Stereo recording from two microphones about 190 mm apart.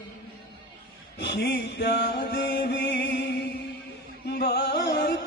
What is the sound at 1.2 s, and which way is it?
Music, 65° left (ahead or behind).